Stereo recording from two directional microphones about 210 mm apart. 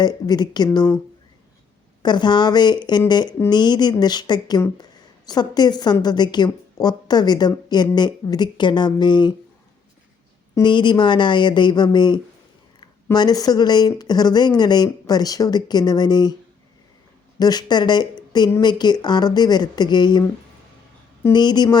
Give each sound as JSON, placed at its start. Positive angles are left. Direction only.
{"t": 0.0, "sound": "speech", "side_deg": 20}
{"t": 2.0, "sound": "speech", "side_deg": 20}
{"t": 10.5, "sound": "speech", "side_deg": 20}
{"t": 17.4, "sound": "speech", "side_deg": 20}
{"t": 21.2, "sound": "speech", "side_deg": 20}